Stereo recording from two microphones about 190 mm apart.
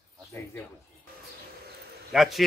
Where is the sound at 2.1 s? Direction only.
Centre (ahead or behind).